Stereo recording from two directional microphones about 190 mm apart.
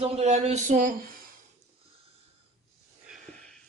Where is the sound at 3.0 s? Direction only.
Centre (ahead or behind).